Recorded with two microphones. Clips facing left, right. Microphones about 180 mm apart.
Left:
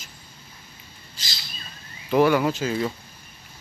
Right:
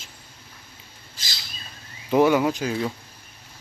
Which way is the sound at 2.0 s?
20° right (ahead or behind).